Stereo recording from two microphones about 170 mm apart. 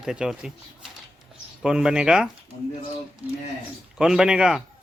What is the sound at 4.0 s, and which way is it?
Speech, 5° right (ahead or behind).